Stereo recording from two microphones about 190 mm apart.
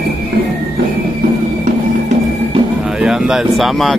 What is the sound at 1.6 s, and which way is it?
Music, 40° right (ahead or behind).